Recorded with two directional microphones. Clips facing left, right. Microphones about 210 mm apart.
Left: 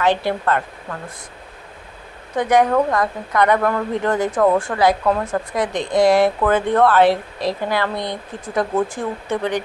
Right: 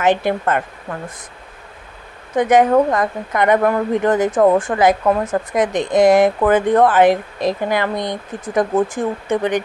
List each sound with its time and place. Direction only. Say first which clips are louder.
0.0 s speech: right 2 dB; 20° right (ahead or behind)
2.3 s speech: right 3 dB; 20° right (ahead or behind)